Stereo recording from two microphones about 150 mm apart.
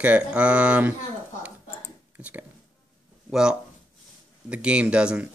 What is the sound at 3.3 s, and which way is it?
Speech, 5° right (ahead or behind).